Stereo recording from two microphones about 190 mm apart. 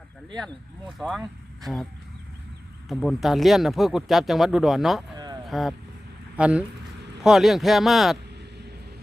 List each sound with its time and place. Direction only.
0.3 s speech: centre (ahead or behind)
2.9 s speech: centre (ahead or behind)
5.1 s a sound: 20° right (ahead or behind)
5.5 s speech: centre (ahead or behind)